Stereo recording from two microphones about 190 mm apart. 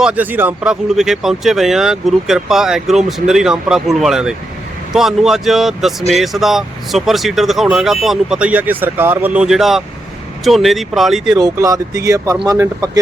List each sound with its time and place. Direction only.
0.0 s speech: 10° right (ahead or behind)
11.3 s speech: 20° right (ahead or behind)